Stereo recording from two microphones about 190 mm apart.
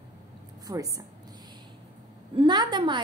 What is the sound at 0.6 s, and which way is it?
Speech, 20° right (ahead or behind).